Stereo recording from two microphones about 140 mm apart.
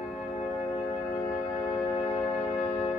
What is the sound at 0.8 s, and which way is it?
Music, 30° left (ahead or behind).